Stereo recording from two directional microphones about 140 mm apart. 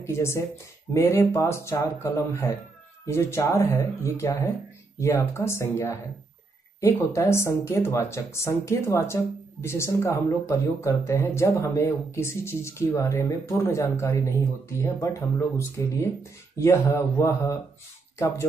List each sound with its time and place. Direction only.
0.0 s speech: 20° left (ahead or behind)